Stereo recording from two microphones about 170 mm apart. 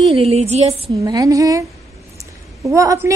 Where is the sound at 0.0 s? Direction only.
35° right (ahead or behind).